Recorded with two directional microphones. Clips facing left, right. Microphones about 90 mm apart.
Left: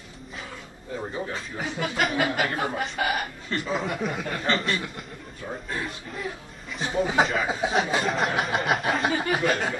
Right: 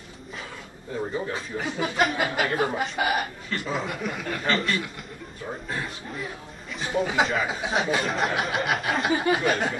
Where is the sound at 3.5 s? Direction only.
30° left (ahead or behind).